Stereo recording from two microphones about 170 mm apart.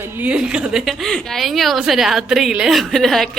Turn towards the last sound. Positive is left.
turn(degrees=0)  # may be behind; listen again after turning